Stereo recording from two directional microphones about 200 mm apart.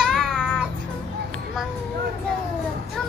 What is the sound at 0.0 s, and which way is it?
Music, centre (ahead or behind).